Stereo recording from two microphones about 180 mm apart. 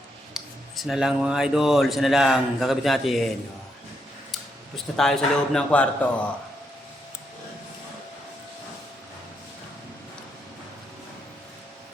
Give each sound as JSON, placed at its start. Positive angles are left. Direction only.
{"t": 0.3, "sound": "speech", "side_deg": 0}
{"t": 4.9, "sound": "speech", "side_deg": 5}